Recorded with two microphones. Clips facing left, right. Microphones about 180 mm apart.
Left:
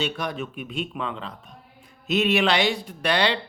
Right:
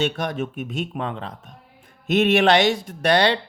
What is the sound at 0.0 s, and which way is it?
A man's voice, 45° right (ahead or behind).